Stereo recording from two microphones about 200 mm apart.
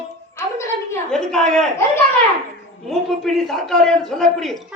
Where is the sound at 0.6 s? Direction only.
15° left (ahead or behind).